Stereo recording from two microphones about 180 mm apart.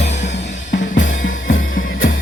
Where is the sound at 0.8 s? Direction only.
45° left (ahead or behind).